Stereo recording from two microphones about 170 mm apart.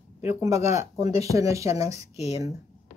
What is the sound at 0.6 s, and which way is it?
Speech, 40° left (ahead or behind).